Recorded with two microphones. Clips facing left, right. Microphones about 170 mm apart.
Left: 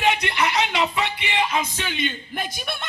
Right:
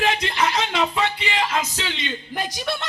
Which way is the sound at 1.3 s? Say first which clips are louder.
Left 3 dB; 75° right (ahead or behind).